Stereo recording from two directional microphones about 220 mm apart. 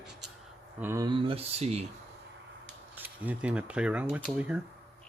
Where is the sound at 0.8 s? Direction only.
15° right (ahead or behind); by 1.8 s 30° right (ahead or behind).